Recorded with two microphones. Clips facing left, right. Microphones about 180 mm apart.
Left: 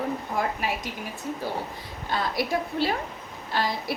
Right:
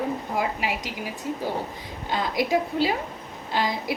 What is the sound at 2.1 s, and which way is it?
A woman's voice, 15° right (ahead or behind).